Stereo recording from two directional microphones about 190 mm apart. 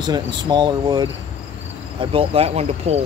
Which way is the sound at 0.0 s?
20° right (ahead or behind).